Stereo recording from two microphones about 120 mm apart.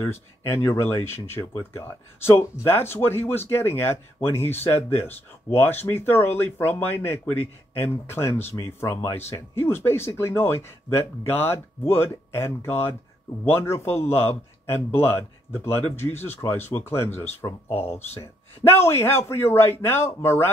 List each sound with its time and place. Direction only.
0.0 s a man's voice: 20° left (ahead or behind)